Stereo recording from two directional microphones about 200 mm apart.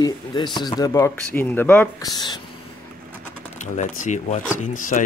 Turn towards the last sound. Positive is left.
turn(degrees=40)  # may be behind; listen again after turning